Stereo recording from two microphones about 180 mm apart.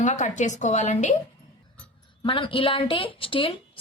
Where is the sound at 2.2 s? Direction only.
30° left (ahead or behind).